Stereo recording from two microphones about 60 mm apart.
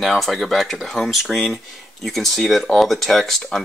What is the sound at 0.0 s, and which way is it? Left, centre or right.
Speech, centre.